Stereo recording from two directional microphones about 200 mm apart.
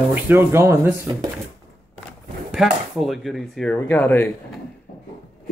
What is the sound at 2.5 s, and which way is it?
Speech, centre (ahead or behind).